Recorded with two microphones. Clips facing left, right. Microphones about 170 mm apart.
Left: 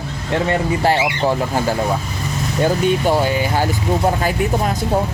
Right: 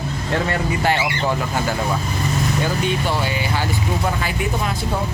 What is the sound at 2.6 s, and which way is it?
Speech, 45° left (ahead or behind).